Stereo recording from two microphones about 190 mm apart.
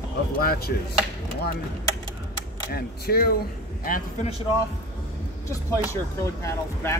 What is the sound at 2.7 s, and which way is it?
Speech, 55° left (ahead or behind).